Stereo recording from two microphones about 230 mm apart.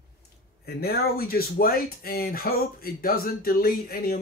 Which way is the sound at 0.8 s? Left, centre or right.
Left.